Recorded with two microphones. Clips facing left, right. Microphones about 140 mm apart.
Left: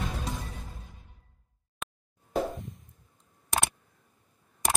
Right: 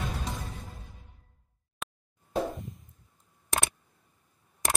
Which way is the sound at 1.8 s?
Centre (ahead or behind).